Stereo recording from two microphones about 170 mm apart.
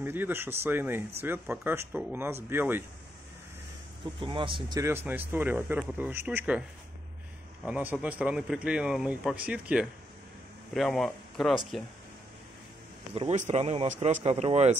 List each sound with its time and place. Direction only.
0.0 s a man's voice: 10° right (ahead or behind)
4.0 s a man's voice: 30° right (ahead or behind); by 6.6 s 10° right (ahead or behind)
7.6 s a man's voice: 10° right (ahead or behind)
13.1 s speech: 35° right (ahead or behind)